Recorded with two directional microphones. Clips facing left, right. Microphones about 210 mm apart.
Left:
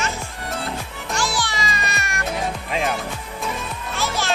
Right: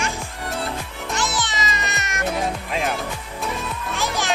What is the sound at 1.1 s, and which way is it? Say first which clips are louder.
Music: left 1 dB; 20° right (ahead or behind).